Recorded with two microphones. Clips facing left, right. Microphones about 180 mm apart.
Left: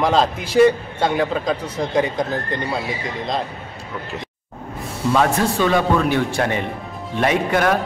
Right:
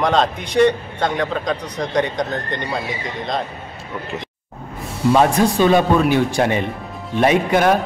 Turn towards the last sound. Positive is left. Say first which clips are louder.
# right 3 dB
turn(degrees=-20)  # may be behind; listen again after turning